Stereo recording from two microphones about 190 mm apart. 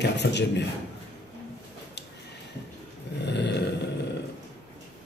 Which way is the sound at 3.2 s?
65° left (ahead or behind).